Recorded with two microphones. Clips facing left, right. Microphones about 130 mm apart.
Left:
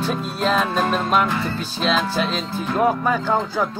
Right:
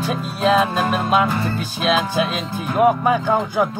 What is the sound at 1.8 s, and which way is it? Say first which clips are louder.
Speech: right 2 dB; 10° right (ahead or behind).